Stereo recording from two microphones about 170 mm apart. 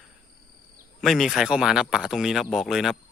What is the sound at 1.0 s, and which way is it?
Speech, centre (ahead or behind).